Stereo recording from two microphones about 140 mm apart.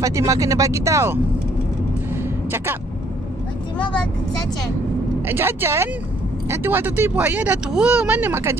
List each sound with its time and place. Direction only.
0.0 s speech: 20° right (ahead or behind)
2.5 s speech: 15° right (ahead or behind)
5.2 s speech: 15° right (ahead or behind)